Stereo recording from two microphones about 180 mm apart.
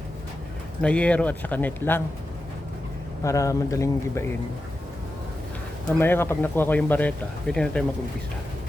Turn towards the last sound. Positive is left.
turn(degrees=5)  # may be behind; listen again after turning